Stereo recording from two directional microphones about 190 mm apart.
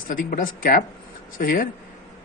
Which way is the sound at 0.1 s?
45° left (ahead or behind).